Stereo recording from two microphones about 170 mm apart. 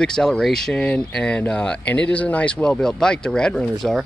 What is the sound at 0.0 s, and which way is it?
Speech, 5° left (ahead or behind).